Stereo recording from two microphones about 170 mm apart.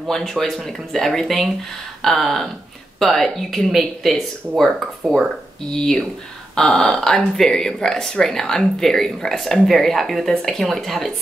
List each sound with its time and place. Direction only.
0.1 s speech: centre (ahead or behind)